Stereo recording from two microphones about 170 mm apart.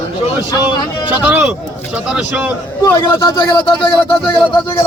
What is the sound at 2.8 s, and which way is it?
Speech, 15° left (ahead or behind).